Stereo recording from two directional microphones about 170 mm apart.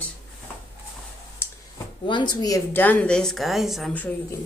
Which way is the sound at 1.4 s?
15° left (ahead or behind).